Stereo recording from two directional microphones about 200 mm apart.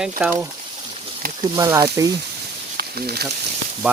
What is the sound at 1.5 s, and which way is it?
Speech, 15° right (ahead or behind).